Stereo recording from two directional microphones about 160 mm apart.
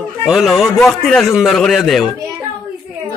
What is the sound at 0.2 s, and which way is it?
A man's voice, centre (ahead or behind).